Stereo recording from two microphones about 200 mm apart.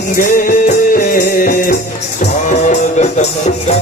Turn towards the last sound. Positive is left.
turn(degrees=35)  # may be behind; listen again after turning